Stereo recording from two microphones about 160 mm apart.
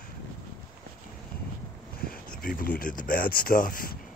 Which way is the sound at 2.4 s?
65° left (ahead or behind).